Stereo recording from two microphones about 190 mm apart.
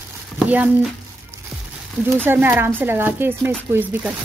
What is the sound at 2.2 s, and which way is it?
Speech, 10° right (ahead or behind).